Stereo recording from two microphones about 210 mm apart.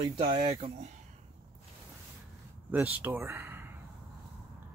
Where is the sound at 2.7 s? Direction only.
10° right (ahead or behind).